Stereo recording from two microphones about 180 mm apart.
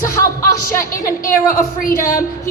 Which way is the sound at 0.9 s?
50° left (ahead or behind).